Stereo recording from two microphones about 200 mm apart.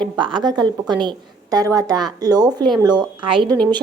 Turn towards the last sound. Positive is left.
turn(degrees=-25)  # may be behind; listen again after turning